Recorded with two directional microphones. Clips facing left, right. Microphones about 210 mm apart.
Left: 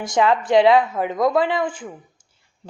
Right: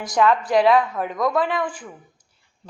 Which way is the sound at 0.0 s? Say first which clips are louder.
Left 1 dB; 25° left (ahead or behind).